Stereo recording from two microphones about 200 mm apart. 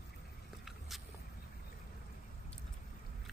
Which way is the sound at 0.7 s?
Centre (ahead or behind).